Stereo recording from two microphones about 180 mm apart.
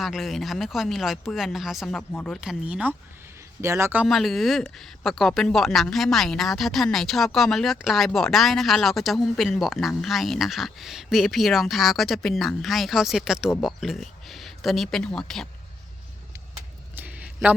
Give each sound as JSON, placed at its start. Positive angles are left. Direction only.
{"t": 0.0, "sound": "speech", "side_deg": 0}
{"t": 4.0, "sound": "speech", "side_deg": 0}
{"t": 16.9, "sound": "a sound", "side_deg": -10}